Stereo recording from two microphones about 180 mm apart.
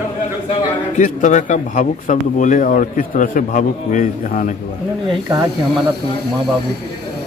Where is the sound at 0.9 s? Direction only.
45° left (ahead or behind).